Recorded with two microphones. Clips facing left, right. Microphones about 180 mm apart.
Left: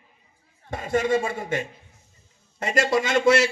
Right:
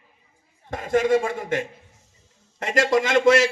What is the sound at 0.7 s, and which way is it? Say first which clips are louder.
Speech: right 3 dB; 50° right (ahead or behind).